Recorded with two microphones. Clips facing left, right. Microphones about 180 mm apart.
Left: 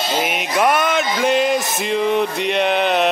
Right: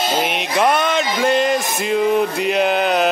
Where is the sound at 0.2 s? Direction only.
5° left (ahead or behind).